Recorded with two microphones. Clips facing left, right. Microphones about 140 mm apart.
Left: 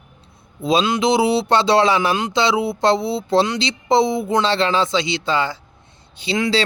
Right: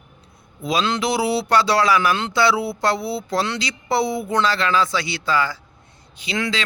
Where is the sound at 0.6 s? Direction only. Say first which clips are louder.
Left 4 dB; 25° left (ahead or behind).